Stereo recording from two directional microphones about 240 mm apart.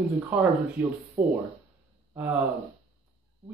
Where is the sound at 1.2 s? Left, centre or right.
Right.